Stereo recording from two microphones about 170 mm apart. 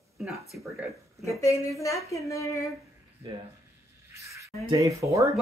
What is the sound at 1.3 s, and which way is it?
Speech, 20° left (ahead or behind).